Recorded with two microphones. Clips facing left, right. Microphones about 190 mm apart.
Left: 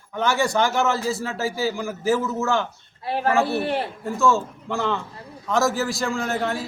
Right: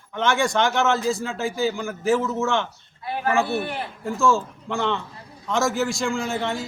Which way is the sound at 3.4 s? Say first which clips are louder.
Left 3 dB; 35° left (ahead or behind).